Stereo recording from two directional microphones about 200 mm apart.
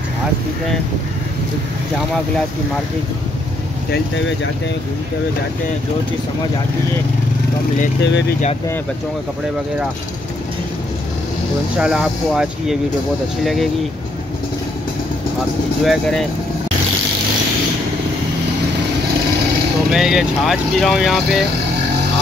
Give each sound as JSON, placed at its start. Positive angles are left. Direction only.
{"t": 8.0, "sound": "speech", "side_deg": 60}
{"t": 11.8, "sound": "speech", "side_deg": -5}
{"t": 15.8, "sound": "speech", "side_deg": 0}
{"t": 19.9, "sound": "speech", "side_deg": 0}